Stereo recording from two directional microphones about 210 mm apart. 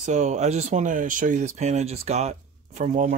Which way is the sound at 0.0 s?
35° right (ahead or behind).